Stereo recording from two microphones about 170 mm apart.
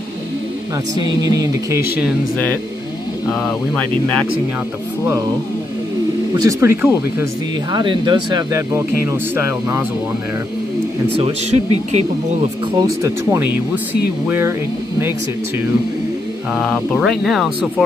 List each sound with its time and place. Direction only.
0.9 s speech: 25° right (ahead or behind)
6.3 s speech: 20° right (ahead or behind)
7.7 s speech: 25° right (ahead or behind)
11.1 s speech: 35° right (ahead or behind)
12.7 s speech: 15° right (ahead or behind)
16.5 s speech: centre (ahead or behind)